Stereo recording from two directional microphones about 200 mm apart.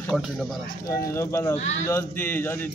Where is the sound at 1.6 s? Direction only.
35° left (ahead or behind).